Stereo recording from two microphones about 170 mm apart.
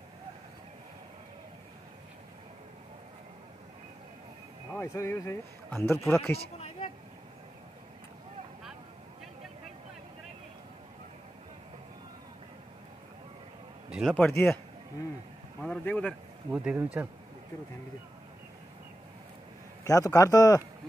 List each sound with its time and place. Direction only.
4.7 s a man's voice: 15° left (ahead or behind)
13.8 s a sound: 5° right (ahead or behind)
14.1 s a man's voice: 10° left (ahead or behind)
15.6 s a man's voice: 10° left (ahead or behind)
16.5 s speech: 10° right (ahead or behind)
19.8 s a man's voice: 20° left (ahead or behind)